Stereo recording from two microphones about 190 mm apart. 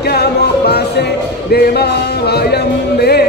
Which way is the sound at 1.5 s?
55° left (ahead or behind).